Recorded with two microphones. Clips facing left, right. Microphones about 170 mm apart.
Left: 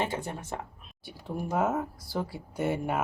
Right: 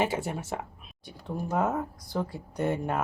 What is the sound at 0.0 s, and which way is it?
Speech, 5° right (ahead or behind).